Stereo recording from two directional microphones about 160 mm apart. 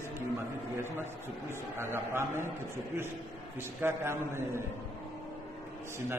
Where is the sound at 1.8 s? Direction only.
15° right (ahead or behind).